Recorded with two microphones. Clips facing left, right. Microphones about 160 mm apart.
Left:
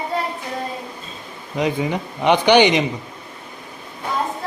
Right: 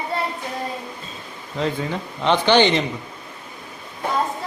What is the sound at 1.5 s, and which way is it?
A man's voice, 15° left (ahead or behind).